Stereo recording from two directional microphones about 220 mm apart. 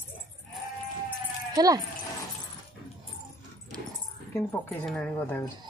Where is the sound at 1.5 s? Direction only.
15° right (ahead or behind).